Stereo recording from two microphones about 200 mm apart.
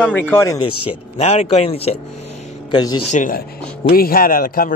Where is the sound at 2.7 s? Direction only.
20° left (ahead or behind).